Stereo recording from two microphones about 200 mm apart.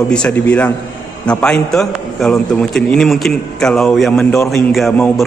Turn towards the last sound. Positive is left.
turn(degrees=5)  # may be behind; listen again after turning